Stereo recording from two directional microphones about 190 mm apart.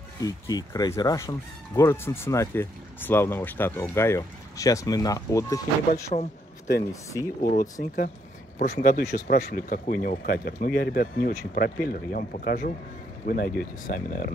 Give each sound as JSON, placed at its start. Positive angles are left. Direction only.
{"t": 0.2, "sound": "speech", "side_deg": 20}
{"t": 7.8, "sound": "speech", "side_deg": 45}